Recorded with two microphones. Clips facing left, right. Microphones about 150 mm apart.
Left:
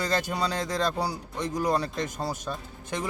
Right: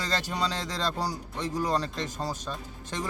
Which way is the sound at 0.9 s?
10° left (ahead or behind).